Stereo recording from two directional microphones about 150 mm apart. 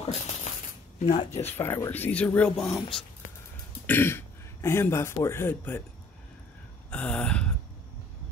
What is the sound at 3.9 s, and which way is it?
Speech, 15° left (ahead or behind).